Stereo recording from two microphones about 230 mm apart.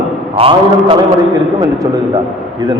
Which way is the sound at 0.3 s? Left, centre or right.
Right.